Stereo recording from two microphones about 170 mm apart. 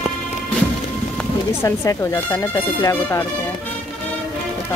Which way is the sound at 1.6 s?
20° left (ahead or behind).